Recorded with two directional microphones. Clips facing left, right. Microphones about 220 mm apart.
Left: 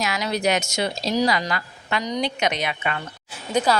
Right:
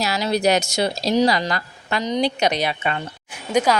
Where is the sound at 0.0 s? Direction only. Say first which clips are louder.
Right 4 dB; 35° right (ahead or behind).